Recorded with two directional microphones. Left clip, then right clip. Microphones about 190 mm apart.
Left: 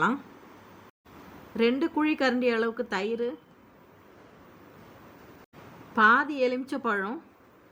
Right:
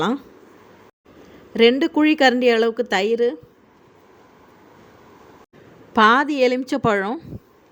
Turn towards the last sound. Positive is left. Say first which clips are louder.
# right 9 dB
turn(degrees=-35)  # may be behind; listen again after turning